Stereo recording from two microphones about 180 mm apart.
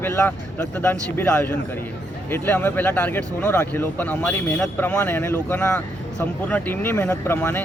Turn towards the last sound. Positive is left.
turn(degrees=15)  # may be behind; listen again after turning